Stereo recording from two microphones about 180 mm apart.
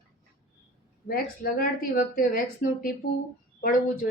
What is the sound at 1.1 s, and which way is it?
A woman's voice, 55° left (ahead or behind).